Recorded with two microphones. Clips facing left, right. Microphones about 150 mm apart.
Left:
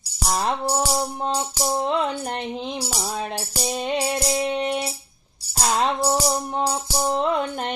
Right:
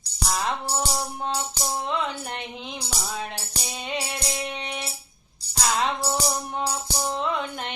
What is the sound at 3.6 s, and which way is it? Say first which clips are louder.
Music: left 8 dB; 40° left (ahead or behind).